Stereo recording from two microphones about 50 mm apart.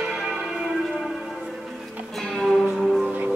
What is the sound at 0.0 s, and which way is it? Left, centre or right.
Church bell, centre.